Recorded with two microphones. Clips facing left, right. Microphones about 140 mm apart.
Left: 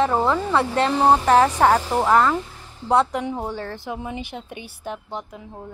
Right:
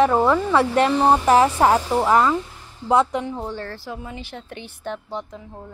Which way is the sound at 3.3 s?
15° left (ahead or behind).